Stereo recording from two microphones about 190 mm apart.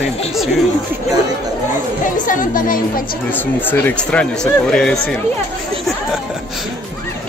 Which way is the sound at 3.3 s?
10° left (ahead or behind).